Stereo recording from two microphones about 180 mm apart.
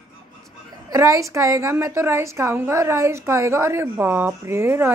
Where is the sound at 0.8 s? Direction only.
20° right (ahead or behind).